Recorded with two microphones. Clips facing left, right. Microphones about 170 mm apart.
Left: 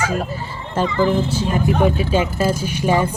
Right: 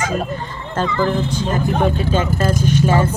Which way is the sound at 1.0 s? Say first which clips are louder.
Left 1 dB; 5° left (ahead or behind).